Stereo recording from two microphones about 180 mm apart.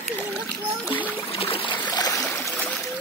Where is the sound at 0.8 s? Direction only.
10° left (ahead or behind).